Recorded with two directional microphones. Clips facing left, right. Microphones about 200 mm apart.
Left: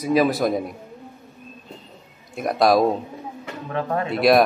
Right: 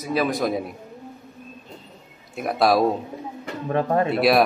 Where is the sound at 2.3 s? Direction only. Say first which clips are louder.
Left 2 dB; centre (ahead or behind).